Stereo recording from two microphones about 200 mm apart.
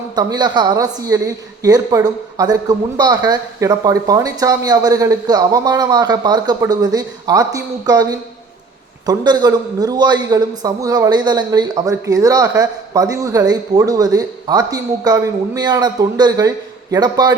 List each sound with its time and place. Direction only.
0.2 s a woman's voice: 20° right (ahead or behind)